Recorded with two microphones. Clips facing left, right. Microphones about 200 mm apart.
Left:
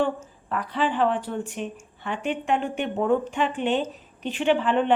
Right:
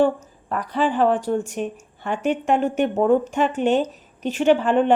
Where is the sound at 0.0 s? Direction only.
40° right (ahead or behind).